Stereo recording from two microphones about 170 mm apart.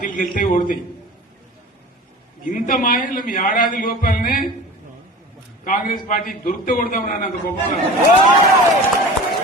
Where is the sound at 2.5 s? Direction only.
55° left (ahead or behind).